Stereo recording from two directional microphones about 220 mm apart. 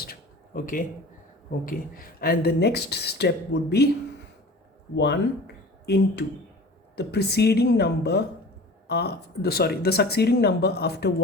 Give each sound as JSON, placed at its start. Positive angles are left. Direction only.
{"t": 0.0, "sound": "a sound", "side_deg": 40}
{"t": 1.5, "sound": "speech", "side_deg": 40}
{"t": 4.9, "sound": "speech", "side_deg": 50}